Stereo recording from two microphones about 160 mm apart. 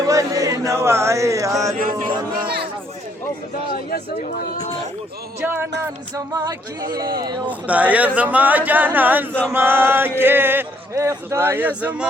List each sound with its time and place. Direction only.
0.0 s music: 20° right (ahead or behind)
1.8 s chant: 60° right (ahead or behind)
2.4 s a sound: 70° right (ahead or behind)
3.7 s speech: 65° left (ahead or behind)
5.4 s speech: 15° right (ahead or behind)
6.1 s a sound: 20° right (ahead or behind)
7.7 s speech: 10° right (ahead or behind)